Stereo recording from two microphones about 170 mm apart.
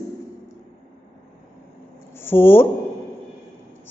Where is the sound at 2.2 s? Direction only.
15° left (ahead or behind).